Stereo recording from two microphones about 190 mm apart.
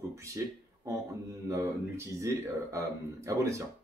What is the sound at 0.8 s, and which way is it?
Speech, 20° right (ahead or behind).